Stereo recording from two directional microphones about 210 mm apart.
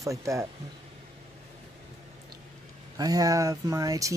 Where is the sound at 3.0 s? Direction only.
15° right (ahead or behind).